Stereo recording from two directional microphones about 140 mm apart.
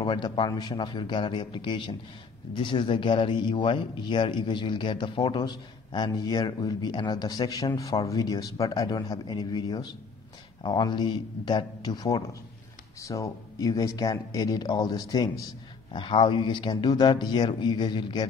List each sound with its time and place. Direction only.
0.0 s a man's voice: 35° left (ahead or behind)